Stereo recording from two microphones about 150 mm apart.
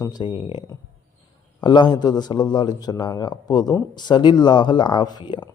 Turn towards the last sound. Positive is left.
turn(degrees=30)  # may be behind; listen again after turning